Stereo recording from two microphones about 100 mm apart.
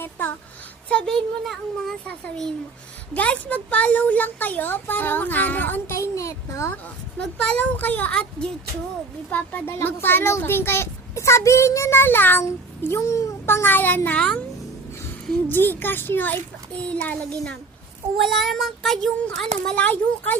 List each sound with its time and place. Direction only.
0.9 s speech: 10° left (ahead or behind)
6.0 s a sound: 30° left (ahead or behind)
7.2 s a child's voice: 10° left (ahead or behind)
14.2 s speech: 10° left (ahead or behind)
15.4 s a child's voice: 20° left (ahead or behind)
18.2 s a child's voice: centre (ahead or behind)